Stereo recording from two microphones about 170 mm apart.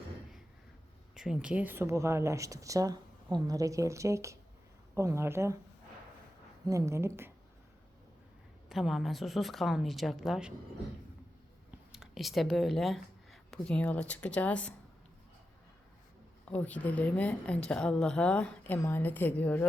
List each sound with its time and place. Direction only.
1.1 s a woman's voice: 5° right (ahead or behind)
6.7 s speech: 20° right (ahead or behind)
8.7 s a woman's voice: centre (ahead or behind)
11.9 s speech: centre (ahead or behind)
16.5 s a woman's voice: 10° left (ahead or behind)